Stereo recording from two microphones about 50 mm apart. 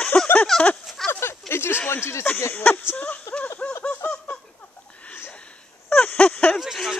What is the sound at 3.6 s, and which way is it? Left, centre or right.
Laughter, left.